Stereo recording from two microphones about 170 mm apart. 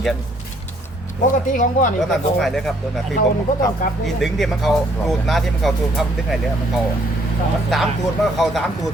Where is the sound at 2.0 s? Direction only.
Centre (ahead or behind).